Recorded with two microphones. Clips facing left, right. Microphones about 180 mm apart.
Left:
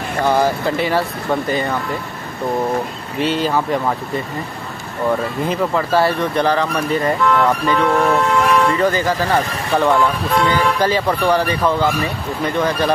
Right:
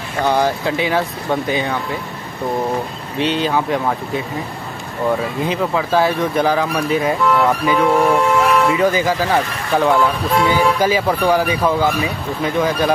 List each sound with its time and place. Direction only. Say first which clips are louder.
0.4 s speech: left 1 dB; centre (ahead or behind)
3.4 s speech: even; centre (ahead or behind)
5.5 s speech: left 1 dB; centre (ahead or behind)